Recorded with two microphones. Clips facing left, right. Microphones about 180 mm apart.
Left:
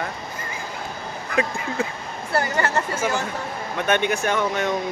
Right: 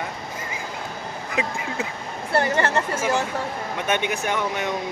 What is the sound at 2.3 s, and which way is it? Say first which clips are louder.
Speech: right 1 dB; 30° right (ahead or behind).